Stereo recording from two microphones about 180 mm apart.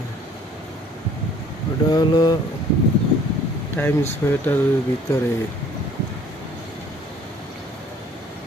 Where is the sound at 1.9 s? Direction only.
25° left (ahead or behind).